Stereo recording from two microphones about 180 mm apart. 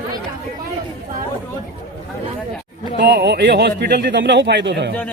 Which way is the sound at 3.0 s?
65° right (ahead or behind).